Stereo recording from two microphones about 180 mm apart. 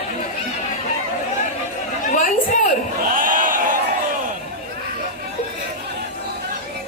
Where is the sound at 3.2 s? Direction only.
50° right (ahead or behind).